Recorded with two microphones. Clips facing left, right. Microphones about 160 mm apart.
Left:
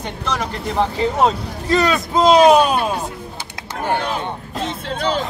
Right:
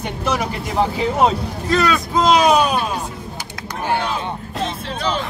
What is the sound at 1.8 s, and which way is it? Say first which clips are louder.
Speech: left 2 dB; 25° left (ahead or behind).